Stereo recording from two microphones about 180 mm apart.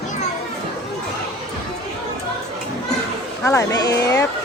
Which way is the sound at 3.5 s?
20° left (ahead or behind).